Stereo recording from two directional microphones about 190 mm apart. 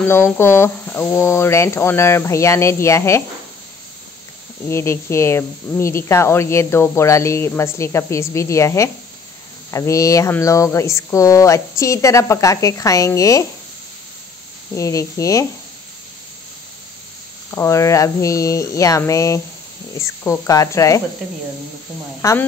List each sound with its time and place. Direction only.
0.0 s speech: 15° left (ahead or behind)
4.6 s speech: 15° left (ahead or behind)
14.8 s speech: 15° left (ahead or behind)
17.5 s speech: 15° left (ahead or behind)
22.2 s speech: 15° left (ahead or behind)